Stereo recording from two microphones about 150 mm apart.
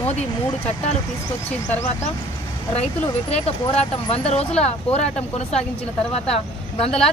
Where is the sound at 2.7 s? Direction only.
40° left (ahead or behind).